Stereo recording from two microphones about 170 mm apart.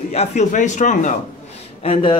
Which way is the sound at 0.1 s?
40° left (ahead or behind).